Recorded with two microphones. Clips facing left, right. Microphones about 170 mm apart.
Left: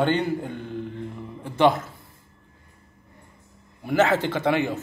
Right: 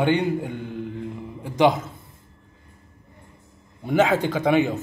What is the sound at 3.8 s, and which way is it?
Speech, 15° right (ahead or behind).